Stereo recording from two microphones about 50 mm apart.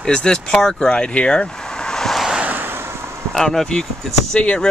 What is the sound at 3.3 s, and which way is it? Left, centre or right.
Speech, centre.